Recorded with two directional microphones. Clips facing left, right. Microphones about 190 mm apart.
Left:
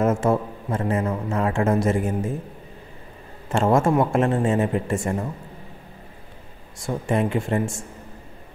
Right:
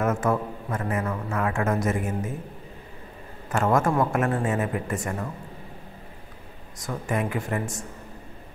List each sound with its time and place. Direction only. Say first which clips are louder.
0.0 s a man's voice: left 4 dB; 25° left (ahead or behind)
3.4 s a man's voice: left 3 dB; 25° left (ahead or behind)
6.8 s a man's voice: left 5 dB; 30° left (ahead or behind)